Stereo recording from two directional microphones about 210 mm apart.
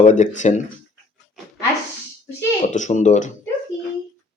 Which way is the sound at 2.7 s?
35° left (ahead or behind).